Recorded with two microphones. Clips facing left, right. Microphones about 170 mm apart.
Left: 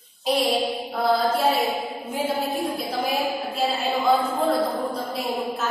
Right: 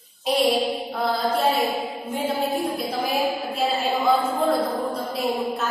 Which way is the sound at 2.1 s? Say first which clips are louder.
Right 1 dB; 5° left (ahead or behind).